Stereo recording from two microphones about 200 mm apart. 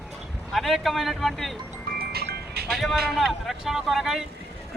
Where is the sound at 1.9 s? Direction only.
50° right (ahead or behind).